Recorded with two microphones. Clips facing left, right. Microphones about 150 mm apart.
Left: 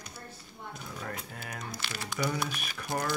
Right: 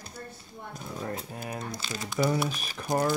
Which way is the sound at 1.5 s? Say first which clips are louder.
Right 4 dB; 25° right (ahead or behind).